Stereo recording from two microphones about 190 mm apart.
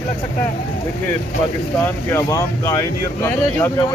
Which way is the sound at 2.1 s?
15° left (ahead or behind).